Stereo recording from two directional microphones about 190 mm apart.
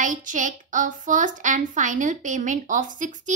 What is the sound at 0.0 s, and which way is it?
A child's voice, 45° right (ahead or behind).